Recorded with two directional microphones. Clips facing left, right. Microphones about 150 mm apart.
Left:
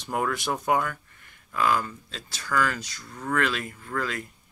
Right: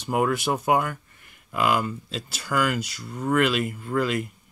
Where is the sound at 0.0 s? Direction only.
10° right (ahead or behind).